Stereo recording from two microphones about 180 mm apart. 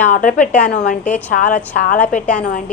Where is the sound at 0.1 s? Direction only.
50° left (ahead or behind).